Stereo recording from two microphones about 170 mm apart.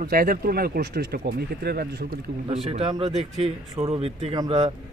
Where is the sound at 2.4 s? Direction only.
35° right (ahead or behind).